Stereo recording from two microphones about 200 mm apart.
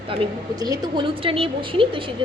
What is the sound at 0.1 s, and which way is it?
A woman's voice, 25° right (ahead or behind).